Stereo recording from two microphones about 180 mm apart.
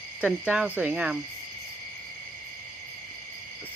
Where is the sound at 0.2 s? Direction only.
5° right (ahead or behind).